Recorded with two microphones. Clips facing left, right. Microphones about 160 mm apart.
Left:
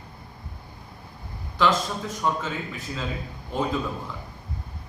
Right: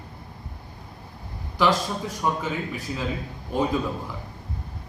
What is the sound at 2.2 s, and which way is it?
A man's voice, 15° right (ahead or behind).